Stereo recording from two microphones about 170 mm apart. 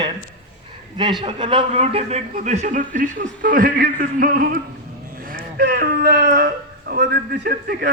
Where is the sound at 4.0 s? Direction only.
55° right (ahead or behind).